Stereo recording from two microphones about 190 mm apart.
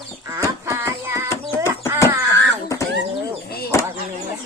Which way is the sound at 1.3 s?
15° left (ahead or behind).